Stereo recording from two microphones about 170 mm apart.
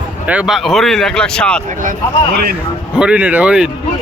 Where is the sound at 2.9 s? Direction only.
5° right (ahead or behind).